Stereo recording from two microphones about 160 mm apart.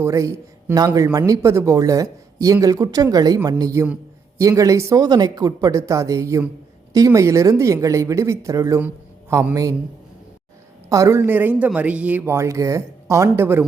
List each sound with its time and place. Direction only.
0.0 s speech: 20° right (ahead or behind)
10.8 s a man's voice: 20° right (ahead or behind)